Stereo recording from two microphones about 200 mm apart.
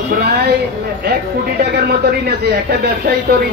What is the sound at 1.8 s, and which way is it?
Speech, 50° right (ahead or behind).